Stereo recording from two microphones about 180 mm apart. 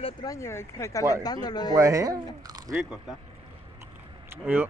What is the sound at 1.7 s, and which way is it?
Speech, 15° right (ahead or behind).